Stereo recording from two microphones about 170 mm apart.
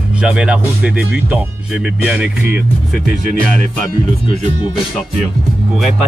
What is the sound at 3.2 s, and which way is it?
Speech, 60° left (ahead or behind).